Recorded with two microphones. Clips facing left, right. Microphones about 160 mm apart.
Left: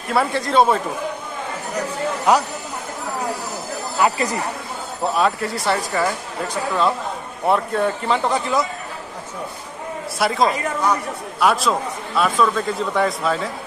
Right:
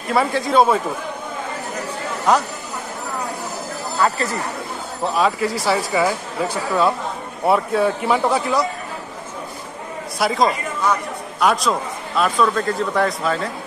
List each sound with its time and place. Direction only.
0.1 s speech: centre (ahead or behind)
4.0 s speech: 15° left (ahead or behind)
5.0 s speech: centre (ahead or behind)
10.1 s speech: centre (ahead or behind)